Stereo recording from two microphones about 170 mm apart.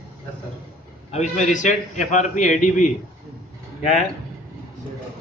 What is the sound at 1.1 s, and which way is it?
A man's voice, 40° left (ahead or behind).